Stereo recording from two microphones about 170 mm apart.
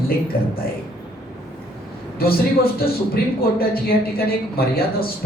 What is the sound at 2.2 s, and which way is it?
A man's voice, 65° left (ahead or behind).